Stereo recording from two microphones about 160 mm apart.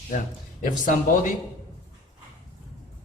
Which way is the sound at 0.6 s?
55° left (ahead or behind).